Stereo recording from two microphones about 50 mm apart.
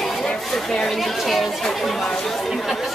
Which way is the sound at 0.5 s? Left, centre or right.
Centre.